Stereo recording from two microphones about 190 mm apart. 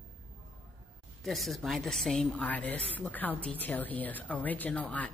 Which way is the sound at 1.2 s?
Centre (ahead or behind).